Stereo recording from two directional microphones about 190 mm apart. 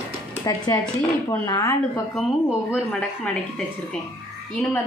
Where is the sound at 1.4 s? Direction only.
20° left (ahead or behind).